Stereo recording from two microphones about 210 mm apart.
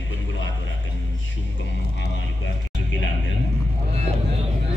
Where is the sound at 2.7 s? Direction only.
60° left (ahead or behind).